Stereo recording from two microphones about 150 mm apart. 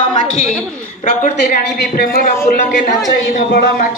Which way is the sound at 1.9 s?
85° left.